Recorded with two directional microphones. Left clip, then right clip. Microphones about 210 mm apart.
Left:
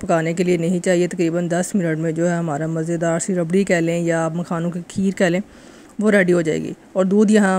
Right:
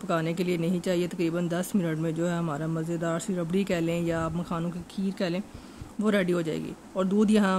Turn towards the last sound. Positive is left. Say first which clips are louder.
# left 9 dB
turn(degrees=25)  # may be behind; listen again after turning